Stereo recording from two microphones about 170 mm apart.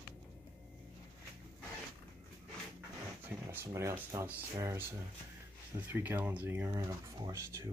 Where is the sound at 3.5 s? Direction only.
15° right (ahead or behind).